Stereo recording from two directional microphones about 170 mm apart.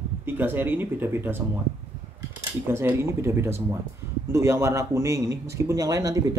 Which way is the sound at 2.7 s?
15° right (ahead or behind).